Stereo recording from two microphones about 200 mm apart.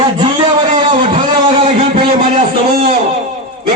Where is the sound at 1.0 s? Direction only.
25° right (ahead or behind).